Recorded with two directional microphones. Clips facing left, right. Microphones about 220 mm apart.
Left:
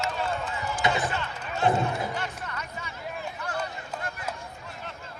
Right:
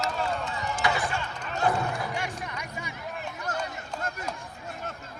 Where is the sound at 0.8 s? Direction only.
20° left (ahead or behind).